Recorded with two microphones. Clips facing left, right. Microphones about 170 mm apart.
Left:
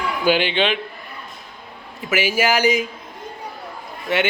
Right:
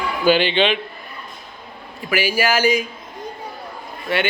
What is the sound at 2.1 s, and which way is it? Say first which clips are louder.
Speech: even; 20° left (ahead or behind).